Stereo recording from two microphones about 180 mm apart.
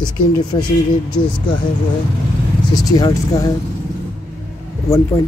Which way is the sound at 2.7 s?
20° left (ahead or behind).